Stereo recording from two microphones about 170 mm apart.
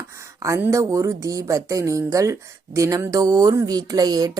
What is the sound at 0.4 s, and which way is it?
Speech, 20° right (ahead or behind).